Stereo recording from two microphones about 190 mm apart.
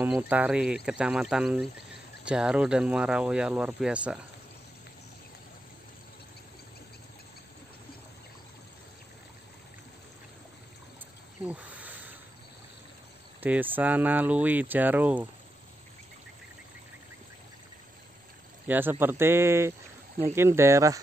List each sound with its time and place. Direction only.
0.0 s speech: 10° right (ahead or behind)
11.4 s insect: 5° right (ahead or behind)
13.4 s speech: 10° right (ahead or behind)
18.7 s speech: 10° right (ahead or behind)